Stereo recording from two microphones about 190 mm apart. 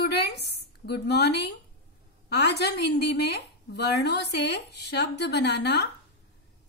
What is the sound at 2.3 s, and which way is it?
A woman's voice, 60° left (ahead or behind).